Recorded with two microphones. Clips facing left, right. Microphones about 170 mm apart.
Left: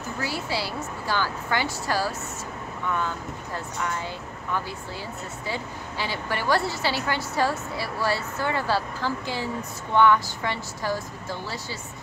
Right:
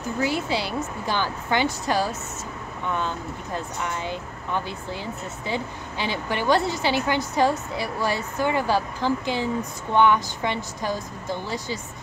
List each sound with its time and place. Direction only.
0.2 s a woman's voice: 20° right (ahead or behind)